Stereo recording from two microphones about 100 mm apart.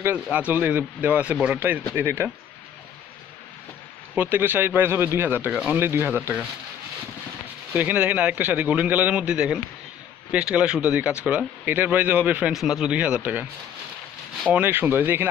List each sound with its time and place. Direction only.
0.0 s a man's voice: 15° right (ahead or behind)
4.1 s speech: 20° right (ahead or behind)
7.7 s a man's voice: 15° right (ahead or behind)
12.5 s a man's voice: 5° right (ahead or behind)
14.5 s speech: 20° right (ahead or behind)